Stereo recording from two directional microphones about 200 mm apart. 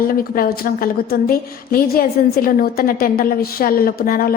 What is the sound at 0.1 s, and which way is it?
A woman's voice, 45° left (ahead or behind).